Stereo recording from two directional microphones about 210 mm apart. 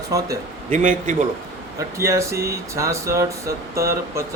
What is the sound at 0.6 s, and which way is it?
Speech, 40° right (ahead or behind).